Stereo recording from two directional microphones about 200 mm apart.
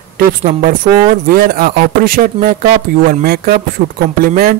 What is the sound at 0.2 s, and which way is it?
Speech, 40° right (ahead or behind).